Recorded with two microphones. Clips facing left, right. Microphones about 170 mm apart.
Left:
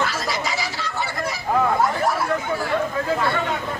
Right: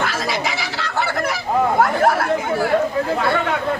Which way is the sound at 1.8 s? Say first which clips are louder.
Right 5 dB; 65° right (ahead or behind).